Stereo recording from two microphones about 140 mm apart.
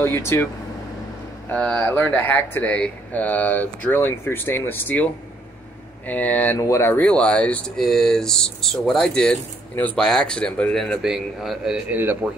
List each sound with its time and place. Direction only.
0.0 s speech: 15° left (ahead or behind)
1.5 s speech: 10° left (ahead or behind)
7.0 s speech: 10° left (ahead or behind)
12.0 s speech: 15° right (ahead or behind)